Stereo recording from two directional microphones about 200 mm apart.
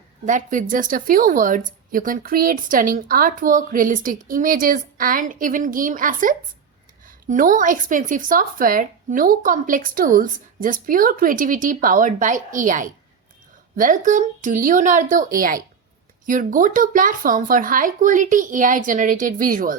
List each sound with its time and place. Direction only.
0.3 s a woman's voice: 40° right (ahead or behind)